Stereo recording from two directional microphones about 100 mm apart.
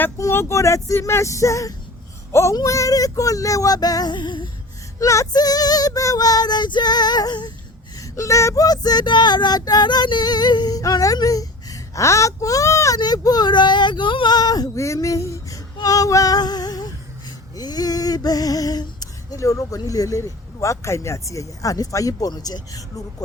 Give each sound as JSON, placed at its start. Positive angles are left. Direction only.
{"t": 0.2, "sound": "speech", "side_deg": 25}
{"t": 4.9, "sound": "speech", "side_deg": 35}
{"t": 7.9, "sound": "speech", "side_deg": 35}
{"t": 13.0, "sound": "speech", "side_deg": 40}
{"t": 17.5, "sound": "a sound", "side_deg": 40}